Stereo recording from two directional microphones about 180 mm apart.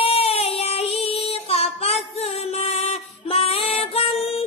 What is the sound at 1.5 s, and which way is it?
Music, 35° left (ahead or behind).